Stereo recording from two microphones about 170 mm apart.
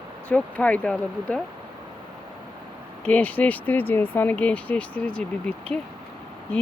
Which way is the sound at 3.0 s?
10° left (ahead or behind).